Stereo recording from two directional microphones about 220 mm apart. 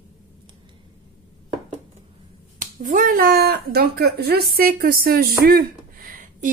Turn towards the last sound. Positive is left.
turn(degrees=-40)  # may be behind; listen again after turning